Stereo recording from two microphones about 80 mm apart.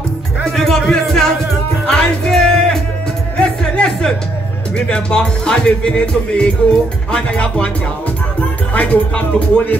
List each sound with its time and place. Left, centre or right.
0.4 s music: centre
3.3 s music: centre
4.7 s speech: centre
8.7 s speech: centre